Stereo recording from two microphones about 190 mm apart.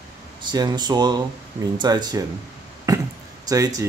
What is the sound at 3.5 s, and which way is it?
Speech, 20° right (ahead or behind).